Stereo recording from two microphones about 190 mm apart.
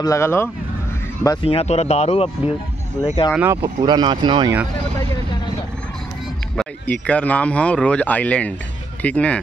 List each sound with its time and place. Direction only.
0.0 s speech: 15° left (ahead or behind)
1.2 s speech: 25° left (ahead or behind)
3.0 s speech: 15° left (ahead or behind)
3.3 s speech: 10° right (ahead or behind)
3.8 s speech: 20° right (ahead or behind)
6.5 s speech: 5° left (ahead or behind)